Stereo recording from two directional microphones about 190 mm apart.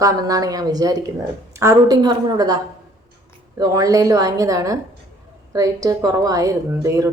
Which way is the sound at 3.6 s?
20° right (ahead or behind).